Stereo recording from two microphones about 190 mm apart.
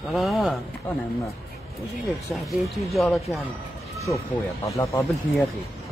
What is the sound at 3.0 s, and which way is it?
Speech, centre (ahead or behind).